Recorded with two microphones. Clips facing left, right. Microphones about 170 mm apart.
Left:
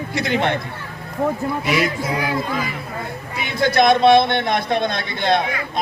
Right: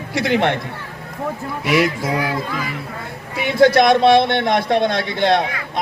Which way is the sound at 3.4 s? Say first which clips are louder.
Right 4 dB; 85° right.